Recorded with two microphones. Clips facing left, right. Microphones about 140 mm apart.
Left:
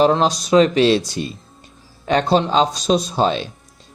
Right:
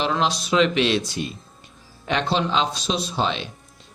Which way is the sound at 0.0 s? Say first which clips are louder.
Left 7 dB; 40° left (ahead or behind).